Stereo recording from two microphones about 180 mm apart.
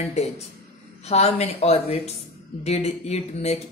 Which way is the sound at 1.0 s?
35° left (ahead or behind).